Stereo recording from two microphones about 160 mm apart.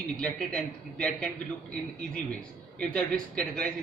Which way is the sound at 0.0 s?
5° left (ahead or behind).